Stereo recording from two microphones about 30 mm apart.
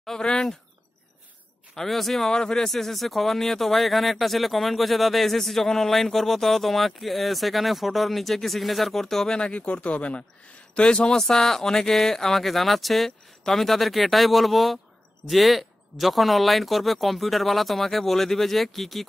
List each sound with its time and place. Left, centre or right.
0.2 s speech: left
1.9 s speech: centre
2.2 s speech: left
2.7 s speech: centre
9.3 s speech: left
9.6 s speech: left
11.1 s speech: centre